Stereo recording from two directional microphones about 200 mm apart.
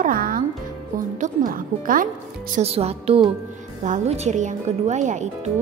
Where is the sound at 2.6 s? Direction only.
30° right (ahead or behind).